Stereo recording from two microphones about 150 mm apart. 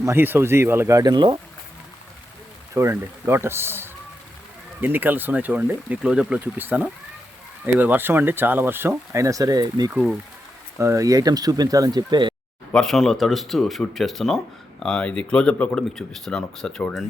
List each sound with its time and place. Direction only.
0.0 s speech: 15° right (ahead or behind)
2.7 s speech: 15° right (ahead or behind)
9.9 s speech: 10° right (ahead or behind)
10.8 s speech: 20° right (ahead or behind)
12.7 s speech: 5° left (ahead or behind)